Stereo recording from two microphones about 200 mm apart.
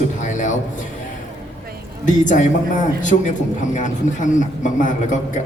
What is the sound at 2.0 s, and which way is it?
Speech, 40° left (ahead or behind).